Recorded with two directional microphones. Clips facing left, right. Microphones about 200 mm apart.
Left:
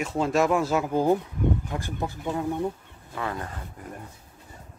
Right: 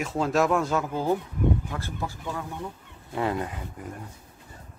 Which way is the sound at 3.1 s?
20° right (ahead or behind).